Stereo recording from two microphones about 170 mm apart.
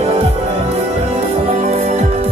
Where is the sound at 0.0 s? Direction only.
35° right (ahead or behind).